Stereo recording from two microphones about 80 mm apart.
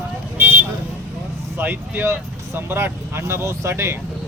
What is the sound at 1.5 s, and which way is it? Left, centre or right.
Speech, right.